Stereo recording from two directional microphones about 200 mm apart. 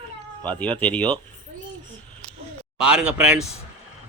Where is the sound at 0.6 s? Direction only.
5° left (ahead or behind).